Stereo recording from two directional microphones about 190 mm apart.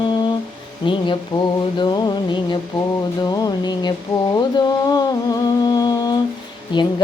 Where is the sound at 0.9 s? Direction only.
25° left (ahead or behind).